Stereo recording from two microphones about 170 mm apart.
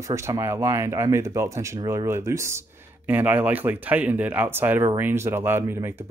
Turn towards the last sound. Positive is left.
turn(degrees=-15)  # may be behind; listen again after turning